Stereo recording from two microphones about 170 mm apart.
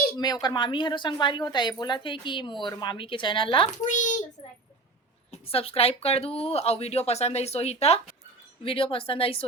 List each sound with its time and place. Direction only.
0.4 s speech: 25° left (ahead or behind)
3.8 s a child's voice: 50° left (ahead or behind)
5.3 s speech: 35° left (ahead or behind)